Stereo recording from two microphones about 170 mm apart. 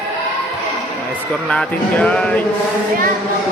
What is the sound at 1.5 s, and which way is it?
Speech, 5° left (ahead or behind).